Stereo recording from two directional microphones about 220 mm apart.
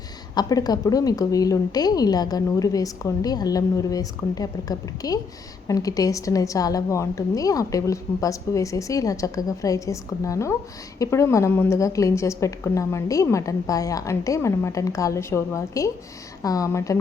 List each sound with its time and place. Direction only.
0.3 s a woman's voice: 15° left (ahead or behind)